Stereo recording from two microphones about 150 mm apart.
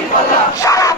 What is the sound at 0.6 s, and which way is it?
Battle cry, 20° left (ahead or behind).